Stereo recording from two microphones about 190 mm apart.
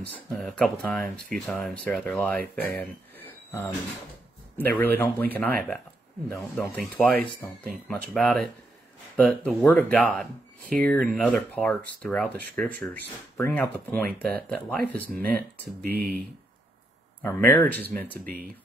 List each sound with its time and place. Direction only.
0.0 s speech: 5° left (ahead or behind)
2.8 s a sound: 10° left (ahead or behind)
4.6 s speech: 10° left (ahead or behind)
15.8 s speech: 55° right (ahead or behind)
17.2 s speech: 10° left (ahead or behind)